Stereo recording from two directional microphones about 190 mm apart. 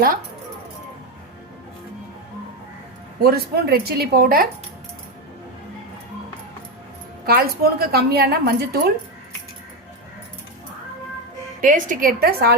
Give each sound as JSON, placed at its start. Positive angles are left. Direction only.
{"t": 3.2, "sound": "a woman's voice", "side_deg": -55}
{"t": 7.3, "sound": "a woman's voice", "side_deg": -55}
{"t": 11.6, "sound": "a woman's voice", "side_deg": -45}